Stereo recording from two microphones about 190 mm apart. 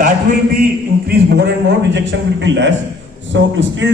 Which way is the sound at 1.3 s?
65° right (ahead or behind).